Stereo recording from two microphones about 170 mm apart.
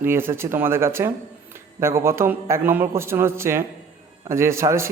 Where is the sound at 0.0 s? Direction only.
15° right (ahead or behind).